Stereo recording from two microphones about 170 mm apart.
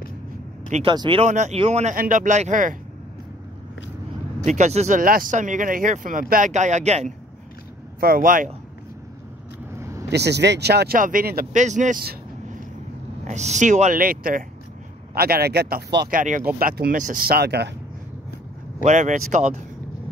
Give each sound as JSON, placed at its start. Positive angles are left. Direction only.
{"t": 0.8, "sound": "speech", "side_deg": -30}
{"t": 1.2, "sound": "speech", "side_deg": -45}
{"t": 2.0, "sound": "speech", "side_deg": -50}
{"t": 4.5, "sound": "speech", "side_deg": -40}
{"t": 8.0, "sound": "speech", "side_deg": -55}
{"t": 9.8, "sound": "vehicle", "side_deg": -15}
{"t": 10.1, "sound": "speech", "side_deg": -80}
{"t": 11.0, "sound": "speech", "side_deg": -55}
{"t": 13.2, "sound": "speech", "side_deg": -40}
{"t": 16.2, "sound": "speech", "side_deg": -50}
{"t": 16.5, "sound": "speech", "side_deg": -60}
{"t": 18.9, "sound": "speech", "side_deg": -45}